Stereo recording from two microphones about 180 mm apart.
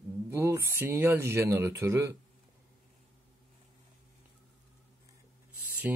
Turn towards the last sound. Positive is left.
turn(degrees=-10)  # may be behind; listen again after turning